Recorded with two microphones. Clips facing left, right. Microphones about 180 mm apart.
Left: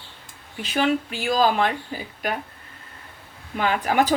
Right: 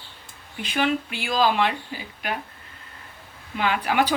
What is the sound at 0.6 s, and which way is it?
Speech, 40° left (ahead or behind).